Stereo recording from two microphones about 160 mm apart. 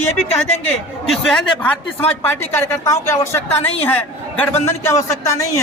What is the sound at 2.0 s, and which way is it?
A woman's voice, 15° left (ahead or behind).